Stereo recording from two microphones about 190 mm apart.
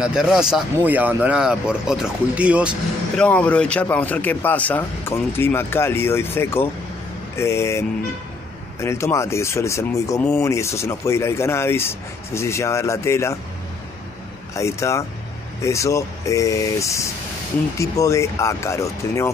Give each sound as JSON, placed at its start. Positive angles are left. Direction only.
{"t": 0.0, "sound": "speech", "side_deg": -5}
{"t": 3.3, "sound": "speech", "side_deg": 5}
{"t": 14.5, "sound": "speech", "side_deg": 15}